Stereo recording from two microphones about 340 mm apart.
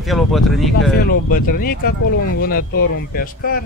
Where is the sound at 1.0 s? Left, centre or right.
Left.